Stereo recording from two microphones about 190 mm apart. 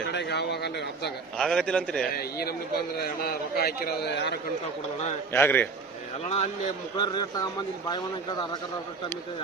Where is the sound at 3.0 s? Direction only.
55° left (ahead or behind).